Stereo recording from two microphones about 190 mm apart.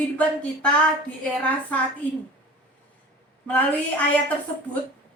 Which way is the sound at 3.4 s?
10° left (ahead or behind).